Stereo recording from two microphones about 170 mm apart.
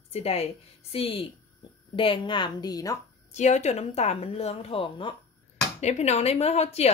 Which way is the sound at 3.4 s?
45° left (ahead or behind).